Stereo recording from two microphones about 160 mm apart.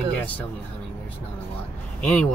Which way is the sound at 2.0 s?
5° left (ahead or behind).